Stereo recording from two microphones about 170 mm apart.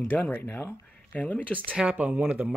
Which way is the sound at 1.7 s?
10° right (ahead or behind).